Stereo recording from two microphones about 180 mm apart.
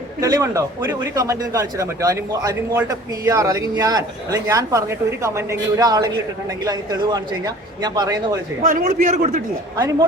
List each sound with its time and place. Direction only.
0.2 s a man's voice: 20° right (ahead or behind)
8.6 s a man's voice: 50° right (ahead or behind)